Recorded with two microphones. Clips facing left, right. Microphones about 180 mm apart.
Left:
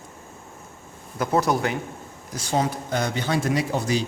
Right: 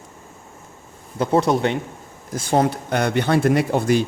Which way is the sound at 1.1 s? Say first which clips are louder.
Right 4 dB; 30° right (ahead or behind).